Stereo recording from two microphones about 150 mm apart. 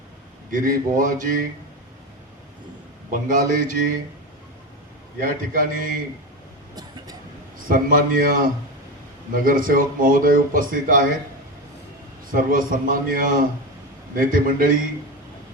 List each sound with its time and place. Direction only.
0.5 s a man's voice: 65° right (ahead or behind)
3.1 s a man's voice: 65° right (ahead or behind)
5.2 s speech: 65° right (ahead or behind)
7.7 s a man's voice: 65° right (ahead or behind)
12.3 s a man's voice: 65° right (ahead or behind)